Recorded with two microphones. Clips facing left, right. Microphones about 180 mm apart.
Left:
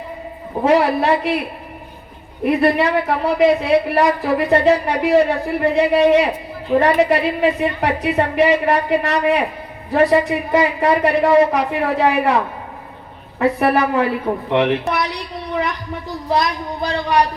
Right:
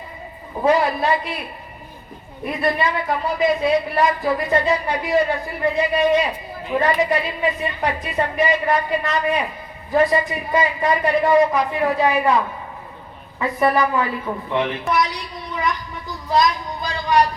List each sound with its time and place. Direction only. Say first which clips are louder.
0.6 s a woman's voice: left 3 dB; 70° left (ahead or behind)
2.4 s a woman's voice: left 6 dB; 70° left (ahead or behind)
13.4 s a woman's voice: left 3 dB; 70° left (ahead or behind)
14.5 s a sound: left 3 dB; 70° left (ahead or behind)